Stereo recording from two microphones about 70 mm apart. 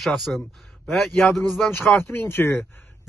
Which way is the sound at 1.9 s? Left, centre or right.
Left.